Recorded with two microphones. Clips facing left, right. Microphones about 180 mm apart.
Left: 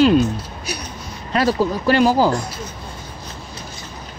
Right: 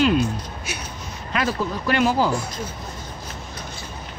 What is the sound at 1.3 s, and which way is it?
Speech, 35° left (ahead or behind).